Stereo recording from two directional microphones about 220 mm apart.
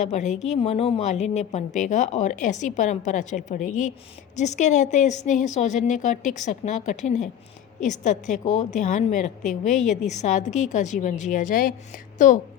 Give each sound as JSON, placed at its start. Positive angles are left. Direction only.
{"t": 0.0, "sound": "a woman's voice", "side_deg": 30}